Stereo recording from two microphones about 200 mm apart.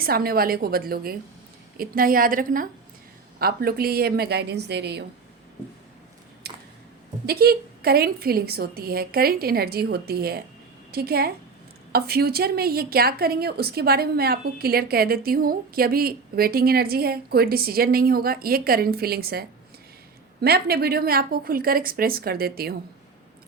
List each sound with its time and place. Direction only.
0.0 s a woman's voice: 50° right (ahead or behind)
6.4 s a sound: 55° right (ahead or behind)
7.3 s a woman's voice: 50° right (ahead or behind)